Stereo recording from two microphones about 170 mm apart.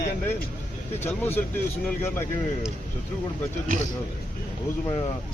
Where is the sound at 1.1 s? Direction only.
15° left (ahead or behind).